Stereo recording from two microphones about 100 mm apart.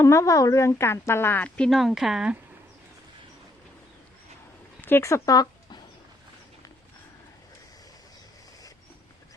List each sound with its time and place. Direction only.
0.0 s speech: 30° left (ahead or behind); by 2.4 s 10° right (ahead or behind)
4.8 s speech: 25° left (ahead or behind); by 5.8 s 40° left (ahead or behind)